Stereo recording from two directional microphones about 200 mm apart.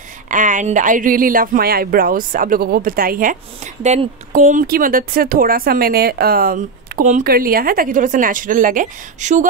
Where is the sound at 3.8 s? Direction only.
35° right (ahead or behind).